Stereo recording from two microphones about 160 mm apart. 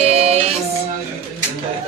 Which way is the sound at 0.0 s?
40° right (ahead or behind).